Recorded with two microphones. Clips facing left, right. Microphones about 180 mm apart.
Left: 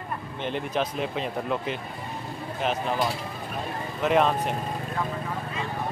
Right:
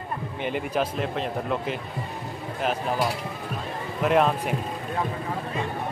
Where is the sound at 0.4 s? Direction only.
5° right (ahead or behind).